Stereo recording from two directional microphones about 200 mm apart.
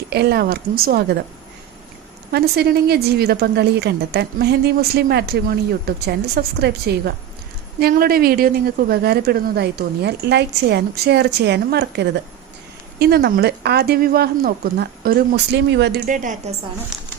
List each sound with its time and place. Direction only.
0.1 s a woman's voice: 55° right (ahead or behind)
2.3 s a woman's voice: 55° right (ahead or behind)
16.0 s a woman's voice: 40° right (ahead or behind)